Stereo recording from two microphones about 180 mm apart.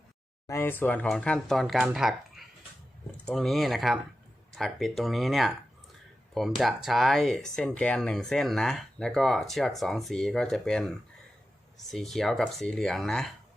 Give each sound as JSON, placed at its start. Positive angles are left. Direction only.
{"t": 0.4, "sound": "speech", "side_deg": 15}